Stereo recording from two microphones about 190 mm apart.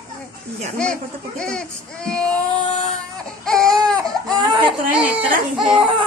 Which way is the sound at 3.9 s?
25° right (ahead or behind).